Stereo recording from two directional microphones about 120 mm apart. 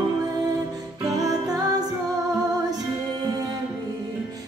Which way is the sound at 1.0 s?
30° right (ahead or behind).